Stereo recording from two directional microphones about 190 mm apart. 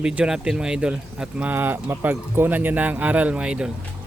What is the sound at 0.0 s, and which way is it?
Speech, 5° right (ahead or behind).